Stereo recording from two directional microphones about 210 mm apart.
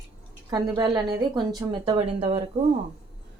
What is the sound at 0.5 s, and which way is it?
Speech, 20° right (ahead or behind).